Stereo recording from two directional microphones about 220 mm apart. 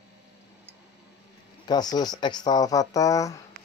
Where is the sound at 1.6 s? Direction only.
20° left (ahead or behind).